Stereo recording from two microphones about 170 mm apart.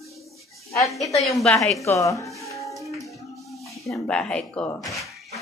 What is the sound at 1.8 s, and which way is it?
Speech, 20° left (ahead or behind).